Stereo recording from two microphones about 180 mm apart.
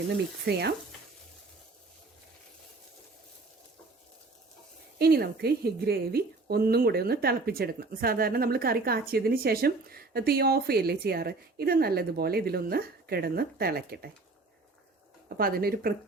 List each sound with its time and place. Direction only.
0.5 s a woman's voice: 60° right (ahead or behind)
4.9 s a woman's voice: 60° right (ahead or behind)
15.4 s a woman's voice: 55° right (ahead or behind)